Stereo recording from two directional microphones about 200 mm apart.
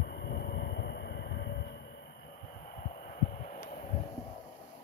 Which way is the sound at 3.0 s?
40° left (ahead or behind).